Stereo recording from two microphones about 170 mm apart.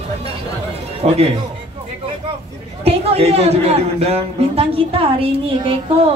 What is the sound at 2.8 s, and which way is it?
Speech, 35° right (ahead or behind).